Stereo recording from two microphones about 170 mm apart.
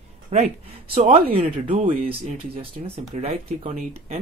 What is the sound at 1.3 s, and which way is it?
Speech, 35° right (ahead or behind).